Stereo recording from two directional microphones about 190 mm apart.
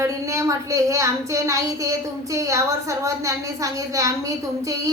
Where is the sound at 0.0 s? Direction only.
15° right (ahead or behind).